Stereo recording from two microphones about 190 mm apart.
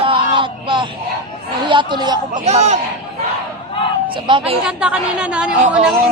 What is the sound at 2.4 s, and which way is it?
Speech, 35° right (ahead or behind).